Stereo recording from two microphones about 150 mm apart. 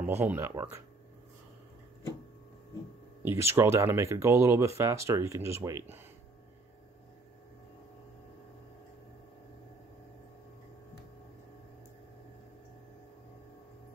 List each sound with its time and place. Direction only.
0.0 s speech: 15° right (ahead or behind)
3.2 s speech: 15° right (ahead or behind)